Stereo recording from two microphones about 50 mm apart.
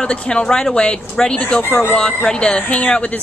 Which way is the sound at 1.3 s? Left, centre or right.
Left.